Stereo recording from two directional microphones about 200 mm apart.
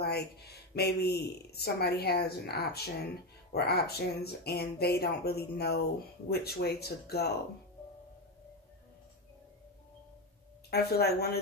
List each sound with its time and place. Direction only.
0.0 s speech: 55° left (ahead or behind)
10.7 s speech: 55° left (ahead or behind)